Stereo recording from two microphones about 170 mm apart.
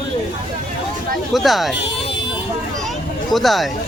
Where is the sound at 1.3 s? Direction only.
Centre (ahead or behind).